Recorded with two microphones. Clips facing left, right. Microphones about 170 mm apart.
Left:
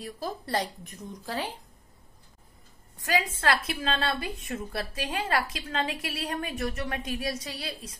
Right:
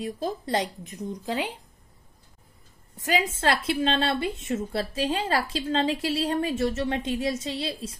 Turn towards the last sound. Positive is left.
turn(degrees=-30)  # may be behind; listen again after turning